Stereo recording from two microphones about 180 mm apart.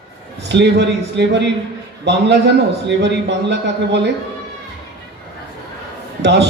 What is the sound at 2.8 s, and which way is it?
A man's voice, 70° right (ahead or behind).